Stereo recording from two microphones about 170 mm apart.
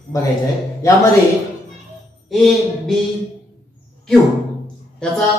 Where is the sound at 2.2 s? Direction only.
Centre (ahead or behind).